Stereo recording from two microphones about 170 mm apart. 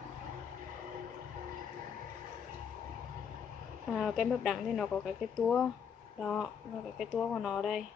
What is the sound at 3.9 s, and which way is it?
A woman's voice, centre (ahead or behind).